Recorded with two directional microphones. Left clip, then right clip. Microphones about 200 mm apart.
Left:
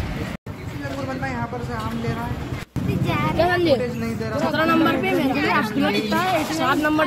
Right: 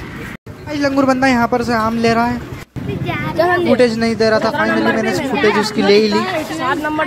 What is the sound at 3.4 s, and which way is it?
Speech, 35° right (ahead or behind).